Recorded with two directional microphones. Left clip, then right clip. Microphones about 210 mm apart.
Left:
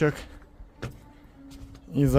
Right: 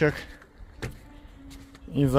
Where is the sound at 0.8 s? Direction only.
55° right (ahead or behind).